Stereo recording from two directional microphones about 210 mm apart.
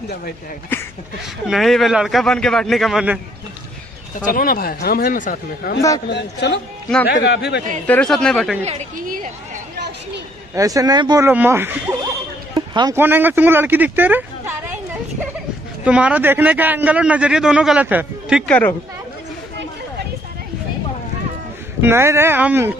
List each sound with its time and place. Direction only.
1.5 s a man's voice: centre (ahead or behind)
4.3 s speech: 45° left (ahead or behind)
6.0 s a man's voice: 55° left (ahead or behind)
7.8 s a man's voice: 5° left (ahead or behind)
8.6 s a woman's voice: 35° right (ahead or behind)
10.5 s a man's voice: 15° right (ahead or behind)
12.5 s a sound: 20° right (ahead or behind)
12.9 s a man's voice: 10° right (ahead or behind)
15.8 s a man's voice: 5° right (ahead or behind)
18.5 s speech: 10° left (ahead or behind)
21.8 s a man's voice: 10° right (ahead or behind)